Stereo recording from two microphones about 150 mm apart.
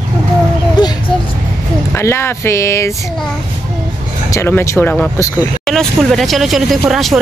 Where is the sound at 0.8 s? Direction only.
30° left (ahead or behind).